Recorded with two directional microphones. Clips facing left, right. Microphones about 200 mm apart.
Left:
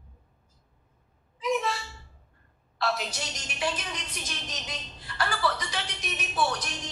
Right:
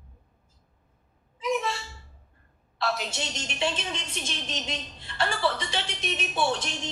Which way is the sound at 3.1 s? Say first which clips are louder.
Right 3 dB; 25° right (ahead or behind).